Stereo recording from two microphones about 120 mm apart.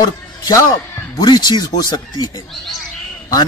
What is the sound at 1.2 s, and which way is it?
Speech, 35° left (ahead or behind).